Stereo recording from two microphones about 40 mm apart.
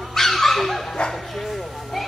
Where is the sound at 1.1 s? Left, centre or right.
Centre.